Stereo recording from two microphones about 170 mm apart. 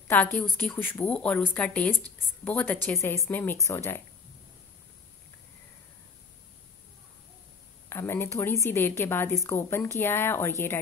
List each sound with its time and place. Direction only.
0.1 s a woman's voice: 10° left (ahead or behind)
7.9 s a woman's voice: 15° left (ahead or behind)